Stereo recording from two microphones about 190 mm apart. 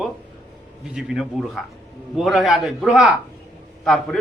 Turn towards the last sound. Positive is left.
turn(degrees=5)  # may be behind; listen again after turning